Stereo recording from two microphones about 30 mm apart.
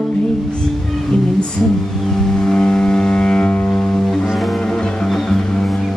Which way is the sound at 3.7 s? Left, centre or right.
Centre.